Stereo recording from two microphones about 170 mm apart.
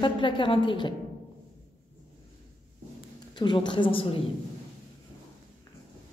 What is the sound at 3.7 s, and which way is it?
Speech, 30° left (ahead or behind).